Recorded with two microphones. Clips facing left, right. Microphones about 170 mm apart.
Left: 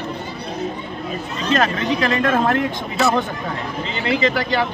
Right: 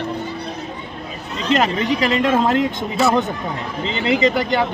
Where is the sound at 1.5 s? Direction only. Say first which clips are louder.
Right 1 dB; 15° right (ahead or behind).